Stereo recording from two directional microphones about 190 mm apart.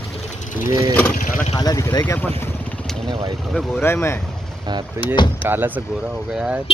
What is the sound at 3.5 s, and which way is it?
Speech, 5° left (ahead or behind).